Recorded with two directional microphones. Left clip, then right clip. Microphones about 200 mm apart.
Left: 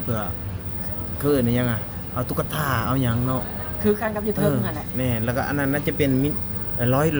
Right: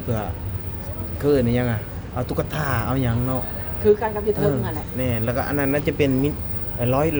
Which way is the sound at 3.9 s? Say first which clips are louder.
Right 5 dB; 30° left (ahead or behind).